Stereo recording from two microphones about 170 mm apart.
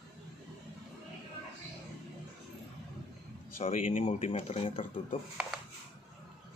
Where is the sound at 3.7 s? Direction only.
45° left (ahead or behind).